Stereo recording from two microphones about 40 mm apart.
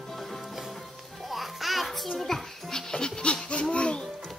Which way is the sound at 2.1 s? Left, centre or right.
Centre.